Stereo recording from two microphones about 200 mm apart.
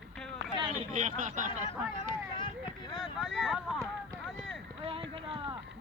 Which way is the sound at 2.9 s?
Centre (ahead or behind).